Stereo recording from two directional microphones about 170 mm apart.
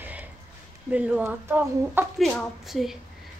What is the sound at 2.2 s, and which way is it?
Speech, 5° left (ahead or behind).